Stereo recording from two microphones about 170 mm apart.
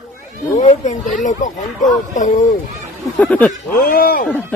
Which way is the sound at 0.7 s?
45° left (ahead or behind).